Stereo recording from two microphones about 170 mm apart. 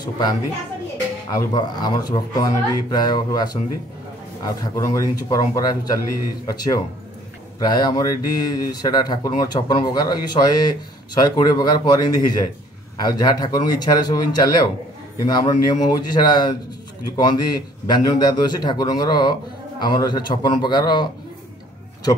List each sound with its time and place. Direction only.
0.0 s speech: 25° left (ahead or behind)